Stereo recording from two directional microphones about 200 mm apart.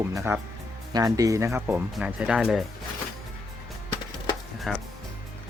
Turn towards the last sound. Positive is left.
turn(degrees=0)  # may be behind; listen again after turning